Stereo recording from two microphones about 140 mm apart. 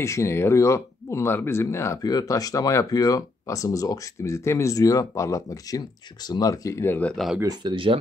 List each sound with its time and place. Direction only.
0.0 s speech: 20° left (ahead or behind)
7.4 s speech: 35° right (ahead or behind)